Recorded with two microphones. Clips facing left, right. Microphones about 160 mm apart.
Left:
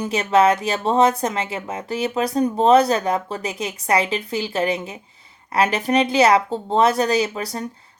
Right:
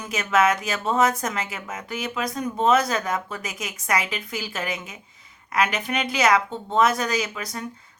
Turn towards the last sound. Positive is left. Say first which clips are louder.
# left 6 dB
turn(degrees=35)  # may be behind; listen again after turning